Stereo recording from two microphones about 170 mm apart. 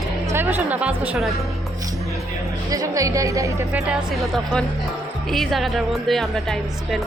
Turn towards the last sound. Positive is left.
turn(degrees=0)  # may be behind; listen again after turning